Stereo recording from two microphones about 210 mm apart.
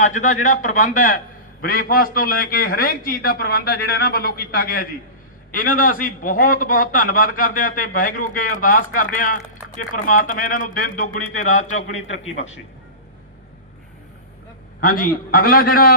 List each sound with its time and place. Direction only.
0.0 s a man's voice: 35° left (ahead or behind)
14.8 s a man's voice: 40° left (ahead or behind)